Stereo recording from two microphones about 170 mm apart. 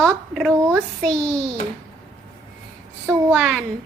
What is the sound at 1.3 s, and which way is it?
Speech, 20° right (ahead or behind).